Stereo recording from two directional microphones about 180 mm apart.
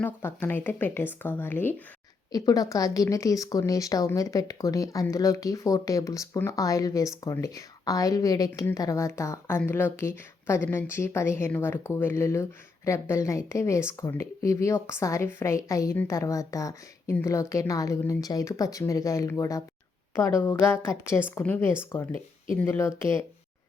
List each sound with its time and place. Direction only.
0.0 s a woman's voice: 10° left (ahead or behind)